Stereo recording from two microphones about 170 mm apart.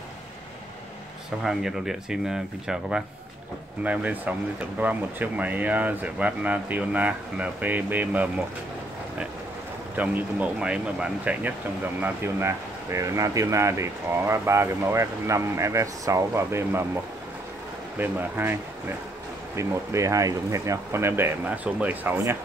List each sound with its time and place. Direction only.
1.4 s speech: centre (ahead or behind)
9.9 s speech: 10° right (ahead or behind)